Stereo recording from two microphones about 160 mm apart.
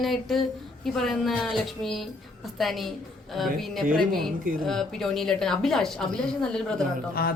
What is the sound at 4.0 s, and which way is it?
A woman's voice, centre (ahead or behind).